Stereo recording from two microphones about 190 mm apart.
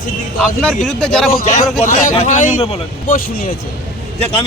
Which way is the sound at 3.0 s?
45° left (ahead or behind).